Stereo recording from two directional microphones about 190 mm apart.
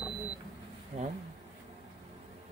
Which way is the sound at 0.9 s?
35° right (ahead or behind).